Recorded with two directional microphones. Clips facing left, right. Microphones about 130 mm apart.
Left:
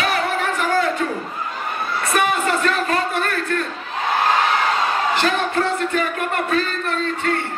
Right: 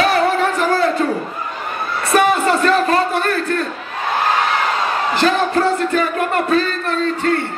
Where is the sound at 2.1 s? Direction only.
35° right (ahead or behind).